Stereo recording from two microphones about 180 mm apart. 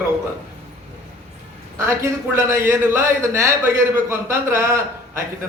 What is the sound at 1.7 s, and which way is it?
A man's voice, 15° right (ahead or behind).